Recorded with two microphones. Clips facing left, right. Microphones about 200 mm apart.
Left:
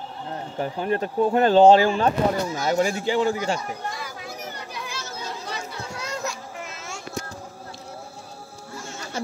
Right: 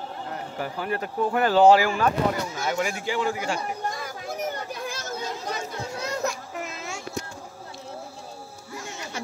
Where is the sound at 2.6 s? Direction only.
35° left (ahead or behind).